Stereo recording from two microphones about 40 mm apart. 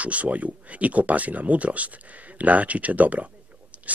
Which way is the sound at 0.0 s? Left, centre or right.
Right.